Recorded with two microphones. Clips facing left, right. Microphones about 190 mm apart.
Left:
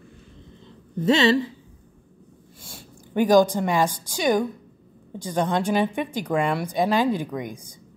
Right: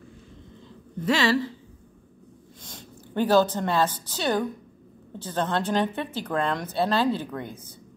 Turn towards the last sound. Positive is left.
turn(degrees=15)  # may be behind; listen again after turning